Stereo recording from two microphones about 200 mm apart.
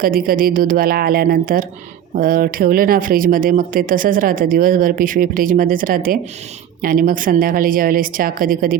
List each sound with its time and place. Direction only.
0.0 s speech: 45° right (ahead or behind)